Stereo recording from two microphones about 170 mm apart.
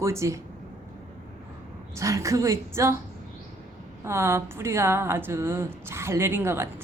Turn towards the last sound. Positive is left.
turn(degrees=-15)  # may be behind; listen again after turning